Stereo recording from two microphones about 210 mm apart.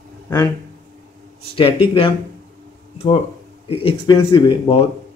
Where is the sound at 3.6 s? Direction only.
25° left (ahead or behind).